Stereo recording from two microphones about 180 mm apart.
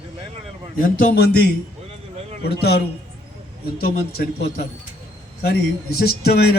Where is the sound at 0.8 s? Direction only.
55° left (ahead or behind).